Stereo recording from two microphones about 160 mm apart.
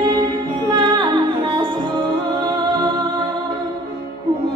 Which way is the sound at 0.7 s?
30° right (ahead or behind).